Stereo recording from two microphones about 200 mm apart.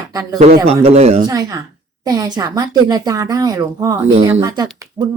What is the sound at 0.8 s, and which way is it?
Speech, 35° right (ahead or behind).